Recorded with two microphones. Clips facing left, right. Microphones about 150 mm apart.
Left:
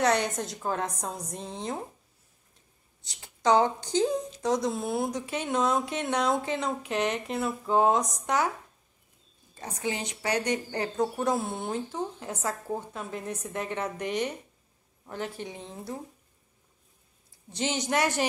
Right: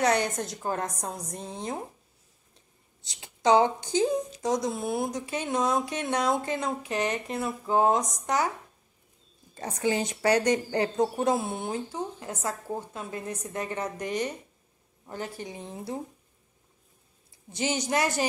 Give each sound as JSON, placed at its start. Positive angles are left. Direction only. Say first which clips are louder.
{"t": 0.0, "sound": "speech", "louder": "even", "side_deg": -5}
{"t": 3.2, "sound": "speech", "louder": "right 2 dB", "side_deg": -15}
{"t": 9.6, "sound": "a woman's voice", "louder": "right 5 dB", "side_deg": -40}
{"t": 11.1, "sound": "speech", "louder": "right 2 dB", "side_deg": -15}
{"t": 17.6, "sound": "speech", "louder": "even", "side_deg": -5}